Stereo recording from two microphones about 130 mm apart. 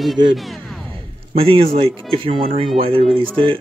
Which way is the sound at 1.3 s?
45° right (ahead or behind).